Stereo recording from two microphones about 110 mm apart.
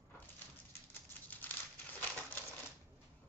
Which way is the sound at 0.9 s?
15° left (ahead or behind).